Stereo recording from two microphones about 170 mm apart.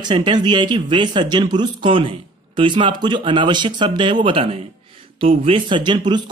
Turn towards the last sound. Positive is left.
turn(degrees=-25)  # may be behind; listen again after turning